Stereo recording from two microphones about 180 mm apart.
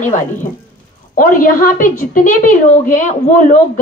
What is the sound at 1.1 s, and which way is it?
A woman's voice, 50° left (ahead or behind).